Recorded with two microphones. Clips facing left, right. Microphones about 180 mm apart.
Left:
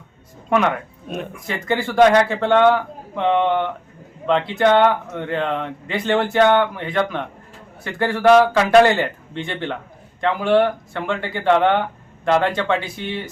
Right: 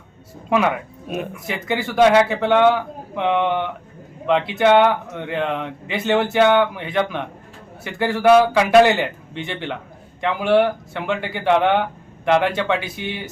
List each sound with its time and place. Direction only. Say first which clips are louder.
0.5 s speech: even; 5° right (ahead or behind)